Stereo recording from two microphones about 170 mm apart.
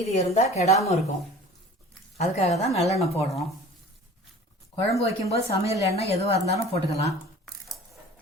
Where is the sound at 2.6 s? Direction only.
40° left (ahead or behind).